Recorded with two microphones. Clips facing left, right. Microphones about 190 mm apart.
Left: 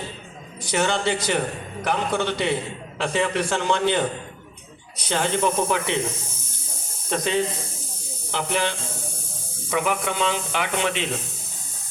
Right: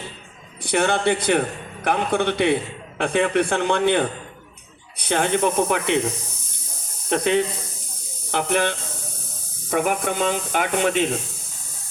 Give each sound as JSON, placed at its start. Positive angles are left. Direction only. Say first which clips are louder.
{"t": 0.6, "sound": "a man's voice", "louder": "right 3 dB", "side_deg": -60}
{"t": 7.1, "sound": "a man's voice", "louder": "right 3 dB", "side_deg": -60}